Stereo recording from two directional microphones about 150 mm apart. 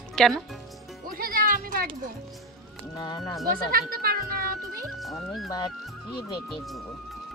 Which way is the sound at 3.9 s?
90° right.